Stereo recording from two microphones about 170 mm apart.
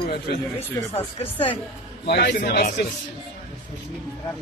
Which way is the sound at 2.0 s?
75° left (ahead or behind).